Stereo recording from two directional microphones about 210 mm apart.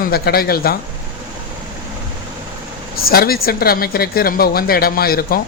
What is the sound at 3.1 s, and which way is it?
Speech, 45° left (ahead or behind).